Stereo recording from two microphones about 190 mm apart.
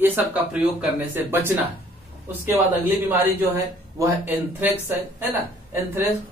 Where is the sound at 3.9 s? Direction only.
10° right (ahead or behind).